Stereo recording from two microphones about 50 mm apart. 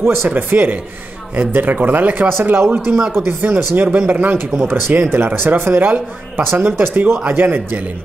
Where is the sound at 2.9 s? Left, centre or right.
Centre.